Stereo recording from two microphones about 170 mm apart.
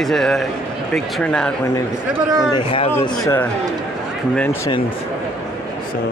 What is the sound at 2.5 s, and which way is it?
Speech, 30° left (ahead or behind).